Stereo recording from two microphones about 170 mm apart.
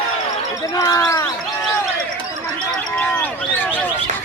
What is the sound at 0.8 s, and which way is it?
Basketball bounce, 20° left (ahead or behind).